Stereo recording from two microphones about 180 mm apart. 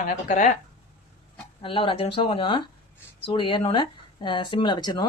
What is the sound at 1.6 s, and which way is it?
Speech, 30° left (ahead or behind).